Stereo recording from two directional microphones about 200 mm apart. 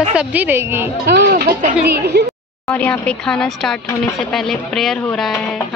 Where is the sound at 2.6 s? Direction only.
5° left (ahead or behind).